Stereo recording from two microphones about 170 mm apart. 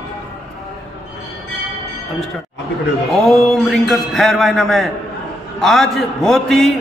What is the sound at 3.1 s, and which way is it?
A man's voice, centre (ahead or behind).